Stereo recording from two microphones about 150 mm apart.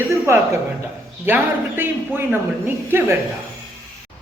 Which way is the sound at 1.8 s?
15° right (ahead or behind).